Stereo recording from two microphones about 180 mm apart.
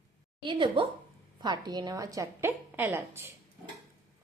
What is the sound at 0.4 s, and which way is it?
A woman's voice, 30° right (ahead or behind).